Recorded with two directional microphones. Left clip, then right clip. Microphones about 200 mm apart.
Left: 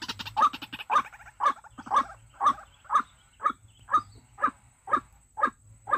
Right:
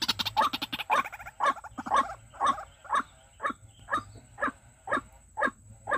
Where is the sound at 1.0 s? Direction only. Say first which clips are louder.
Right 5 dB; 60° right (ahead or behind).